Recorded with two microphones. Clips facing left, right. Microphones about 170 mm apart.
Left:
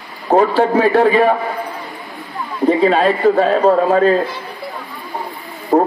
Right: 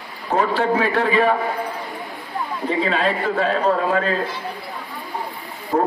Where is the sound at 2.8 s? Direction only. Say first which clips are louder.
Left 7 dB; 40° left (ahead or behind).